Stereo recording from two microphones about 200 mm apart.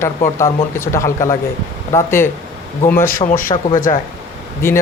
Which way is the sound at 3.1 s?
40° left (ahead or behind).